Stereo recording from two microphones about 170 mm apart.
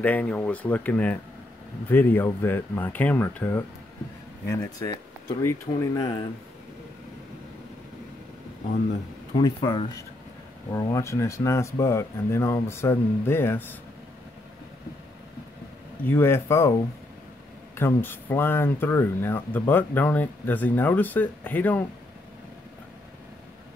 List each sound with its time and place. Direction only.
0.0 s speech: 10° left (ahead or behind)
9.4 s speech: 25° left (ahead or behind)
16.0 s speech: 15° left (ahead or behind)